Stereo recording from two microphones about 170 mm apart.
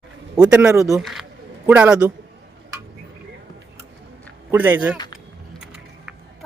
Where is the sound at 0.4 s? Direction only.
5° right (ahead or behind).